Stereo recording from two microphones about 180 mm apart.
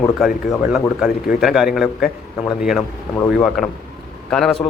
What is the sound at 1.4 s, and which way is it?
A man's voice, centre (ahead or behind).